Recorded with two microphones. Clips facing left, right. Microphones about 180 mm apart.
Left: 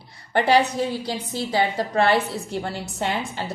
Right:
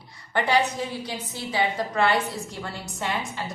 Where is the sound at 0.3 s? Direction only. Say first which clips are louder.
Left 4 dB; 35° left (ahead or behind).